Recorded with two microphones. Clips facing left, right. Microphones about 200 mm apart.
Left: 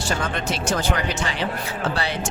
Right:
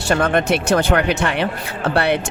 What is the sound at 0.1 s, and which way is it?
Speech, 60° right (ahead or behind).